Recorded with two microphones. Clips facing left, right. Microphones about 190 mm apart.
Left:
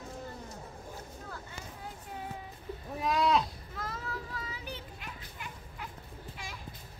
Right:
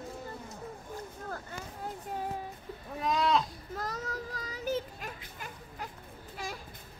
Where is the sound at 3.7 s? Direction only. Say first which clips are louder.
Right 3 dB; 40° right (ahead or behind).